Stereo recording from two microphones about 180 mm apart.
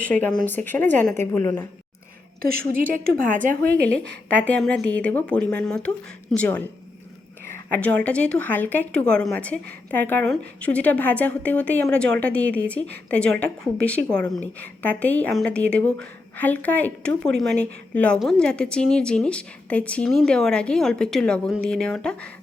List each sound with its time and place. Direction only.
0.0 s speech: 5° left (ahead or behind)
3.4 s a woman's voice: 50° right (ahead or behind)
4.3 s a woman's voice: 10° left (ahead or behind)